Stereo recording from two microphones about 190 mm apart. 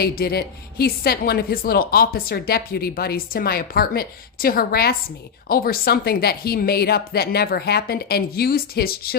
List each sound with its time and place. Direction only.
0.0 s speech: 55° left (ahead or behind)